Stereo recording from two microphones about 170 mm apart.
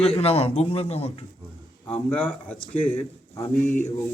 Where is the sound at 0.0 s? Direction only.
35° left (ahead or behind).